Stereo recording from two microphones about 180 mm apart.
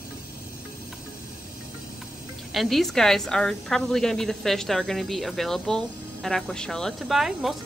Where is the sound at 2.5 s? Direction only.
Centre (ahead or behind).